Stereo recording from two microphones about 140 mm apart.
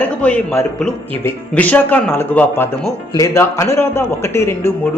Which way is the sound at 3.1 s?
25° left (ahead or behind).